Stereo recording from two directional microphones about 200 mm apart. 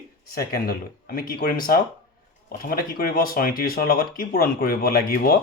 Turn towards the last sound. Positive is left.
turn(degrees=50)  # may be behind; listen again after turning